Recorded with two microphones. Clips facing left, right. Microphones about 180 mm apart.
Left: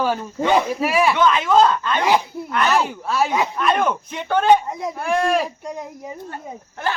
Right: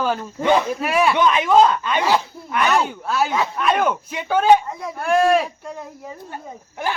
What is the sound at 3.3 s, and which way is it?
Speech, 15° left (ahead or behind).